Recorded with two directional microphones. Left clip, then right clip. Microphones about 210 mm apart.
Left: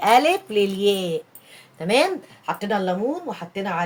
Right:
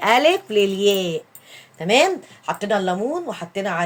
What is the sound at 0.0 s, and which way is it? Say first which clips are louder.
Speech: right 1 dB; 20° right (ahead or behind).